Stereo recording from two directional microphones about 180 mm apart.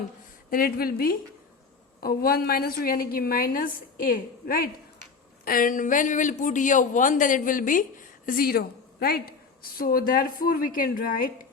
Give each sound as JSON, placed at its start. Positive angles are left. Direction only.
{"t": 0.5, "sound": "a woman's voice", "side_deg": 55}